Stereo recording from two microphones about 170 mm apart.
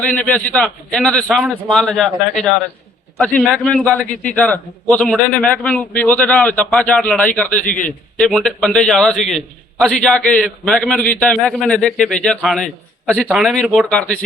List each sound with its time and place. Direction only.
0.1 s a man's voice: 10° left (ahead or behind)